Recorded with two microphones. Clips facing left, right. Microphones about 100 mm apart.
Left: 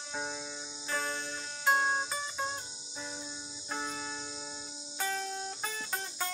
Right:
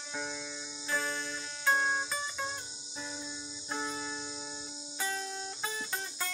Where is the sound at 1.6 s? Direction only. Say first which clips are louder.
Left 1 dB; 20° left (ahead or behind).